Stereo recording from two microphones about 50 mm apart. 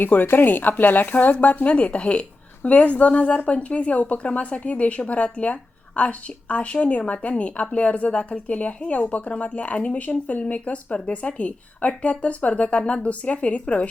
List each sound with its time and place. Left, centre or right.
0.0 s speech: left